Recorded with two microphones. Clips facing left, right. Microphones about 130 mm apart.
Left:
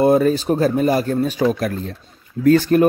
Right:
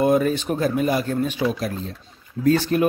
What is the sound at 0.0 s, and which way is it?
A man's voice, 35° left (ahead or behind).